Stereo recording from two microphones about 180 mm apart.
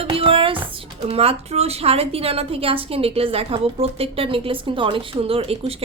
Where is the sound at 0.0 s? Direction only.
30° right (ahead or behind).